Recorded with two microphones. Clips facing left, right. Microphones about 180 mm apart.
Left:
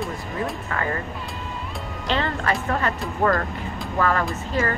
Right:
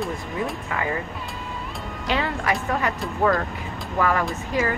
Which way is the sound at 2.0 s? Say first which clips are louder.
Even; 10° right (ahead or behind).